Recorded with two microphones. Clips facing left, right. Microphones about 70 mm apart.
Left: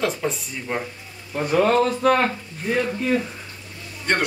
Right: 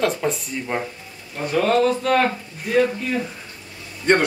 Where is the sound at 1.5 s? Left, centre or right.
Left.